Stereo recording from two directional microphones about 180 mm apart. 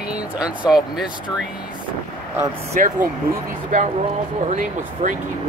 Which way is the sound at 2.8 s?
50° right (ahead or behind).